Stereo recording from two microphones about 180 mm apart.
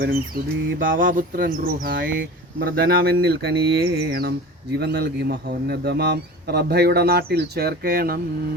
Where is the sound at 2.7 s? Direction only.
55° right (ahead or behind).